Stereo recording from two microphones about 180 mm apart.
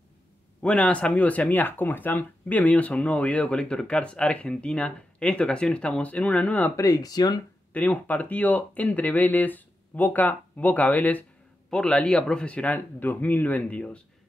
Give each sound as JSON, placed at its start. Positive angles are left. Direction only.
{"t": 0.6, "sound": "speech", "side_deg": 5}
{"t": 6.9, "sound": "speech", "side_deg": 20}
{"t": 7.7, "sound": "speech", "side_deg": 10}